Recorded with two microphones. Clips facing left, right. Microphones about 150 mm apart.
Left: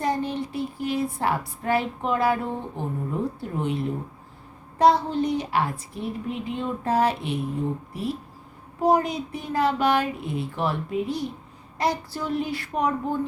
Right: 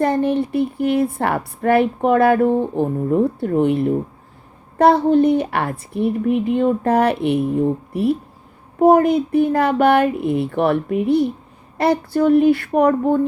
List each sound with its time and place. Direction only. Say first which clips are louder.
0.0 s a woman's voice: right 9 dB; 60° right (ahead or behind)